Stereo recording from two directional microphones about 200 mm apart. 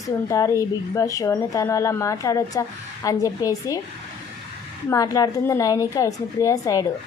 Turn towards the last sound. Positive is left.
turn(degrees=15)  # may be behind; listen again after turning